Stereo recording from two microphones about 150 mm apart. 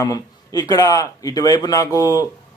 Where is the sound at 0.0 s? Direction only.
25° left (ahead or behind).